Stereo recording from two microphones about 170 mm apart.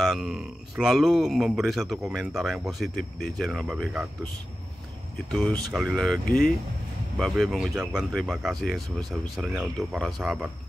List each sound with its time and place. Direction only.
0.0 s speech: centre (ahead or behind)
5.3 s speech: 5° left (ahead or behind)